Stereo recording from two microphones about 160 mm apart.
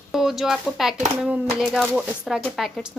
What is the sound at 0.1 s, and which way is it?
Speech, centre (ahead or behind).